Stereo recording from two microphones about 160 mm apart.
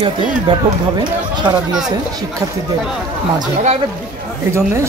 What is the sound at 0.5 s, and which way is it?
Speech, 30° right (ahead or behind).